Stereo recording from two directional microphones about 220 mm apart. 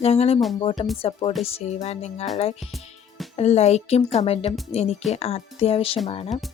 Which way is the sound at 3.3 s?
30° left (ahead or behind).